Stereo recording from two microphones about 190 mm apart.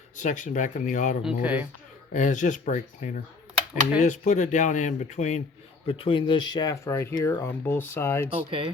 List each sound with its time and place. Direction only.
0.2 s speech: 40° left (ahead or behind)
1.2 s speech: 10° right (ahead or behind)
2.1 s speech: 40° left (ahead or behind); by 8.3 s 10° left (ahead or behind)
8.4 s speech: 25° right (ahead or behind)